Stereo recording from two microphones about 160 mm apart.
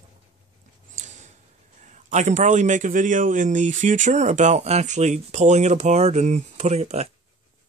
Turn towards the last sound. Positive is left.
turn(degrees=-45)  # may be behind; listen again after turning